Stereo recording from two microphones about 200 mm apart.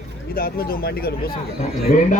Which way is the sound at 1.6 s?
40° left (ahead or behind).